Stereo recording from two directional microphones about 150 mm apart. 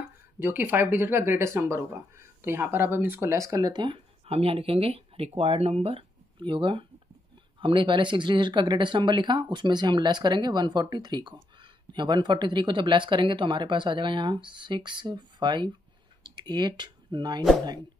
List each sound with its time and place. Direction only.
0.4 s speech: 15° right (ahead or behind); by 17.4 s 30° right (ahead or behind)